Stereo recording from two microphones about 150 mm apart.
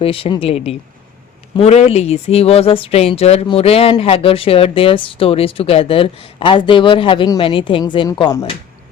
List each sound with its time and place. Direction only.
0.0 s speech: 35° left (ahead or behind)